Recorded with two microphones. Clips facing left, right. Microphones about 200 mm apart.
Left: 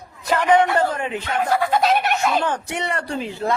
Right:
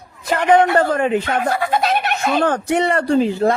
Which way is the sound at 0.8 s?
55° right (ahead or behind).